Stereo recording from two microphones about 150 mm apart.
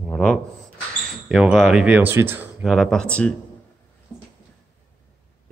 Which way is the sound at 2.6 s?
Centre (ahead or behind).